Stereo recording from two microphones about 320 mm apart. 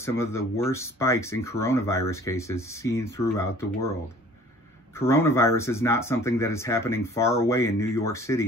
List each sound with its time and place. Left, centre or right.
0.0 s speech: centre
4.9 s speech: centre